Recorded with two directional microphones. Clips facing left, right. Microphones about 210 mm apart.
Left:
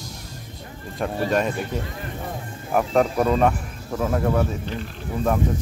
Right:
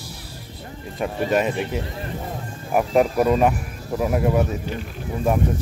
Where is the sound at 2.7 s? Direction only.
10° right (ahead or behind).